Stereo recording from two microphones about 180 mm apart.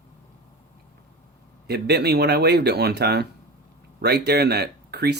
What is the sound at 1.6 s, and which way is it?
Speech, 65° right (ahead or behind).